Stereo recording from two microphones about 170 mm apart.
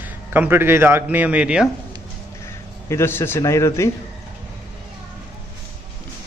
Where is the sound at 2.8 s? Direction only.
15° left (ahead or behind).